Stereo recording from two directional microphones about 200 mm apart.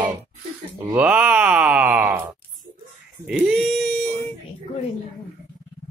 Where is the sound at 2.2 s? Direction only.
20° right (ahead or behind).